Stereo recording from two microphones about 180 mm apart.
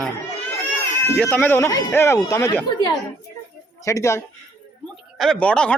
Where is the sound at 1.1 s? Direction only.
10° left (ahead or behind).